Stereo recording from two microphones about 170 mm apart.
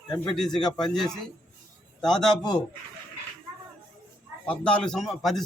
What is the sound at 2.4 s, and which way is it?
Speech, 25° left (ahead or behind).